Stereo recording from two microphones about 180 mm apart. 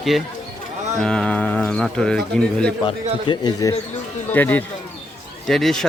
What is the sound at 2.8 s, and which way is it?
Speech, 25° left (ahead or behind).